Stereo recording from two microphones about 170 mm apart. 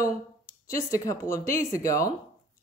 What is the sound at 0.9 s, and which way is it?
Speech, 20° left (ahead or behind).